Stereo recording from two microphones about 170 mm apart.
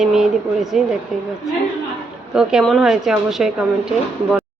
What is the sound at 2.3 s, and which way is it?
A woman's voice, 5° right (ahead or behind).